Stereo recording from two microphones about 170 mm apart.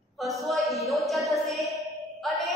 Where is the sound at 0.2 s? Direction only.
Centre (ahead or behind).